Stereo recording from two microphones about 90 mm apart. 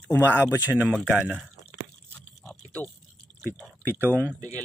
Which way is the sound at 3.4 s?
5° right (ahead or behind).